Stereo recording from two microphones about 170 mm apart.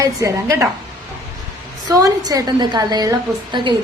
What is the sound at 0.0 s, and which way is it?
Speech, 20° right (ahead or behind).